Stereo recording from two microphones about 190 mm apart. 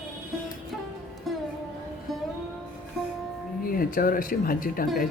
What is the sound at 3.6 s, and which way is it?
Speech, 50° left (ahead or behind).